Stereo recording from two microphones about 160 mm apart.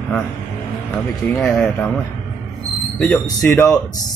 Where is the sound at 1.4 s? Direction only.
5° left (ahead or behind).